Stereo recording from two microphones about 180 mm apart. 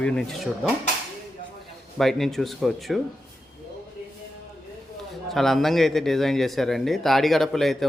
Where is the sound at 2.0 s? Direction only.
Centre (ahead or behind).